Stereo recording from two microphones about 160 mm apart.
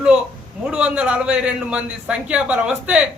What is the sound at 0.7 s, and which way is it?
A man's voice, 5° right (ahead or behind).